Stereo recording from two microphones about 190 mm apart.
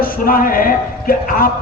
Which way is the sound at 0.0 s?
50° left (ahead or behind).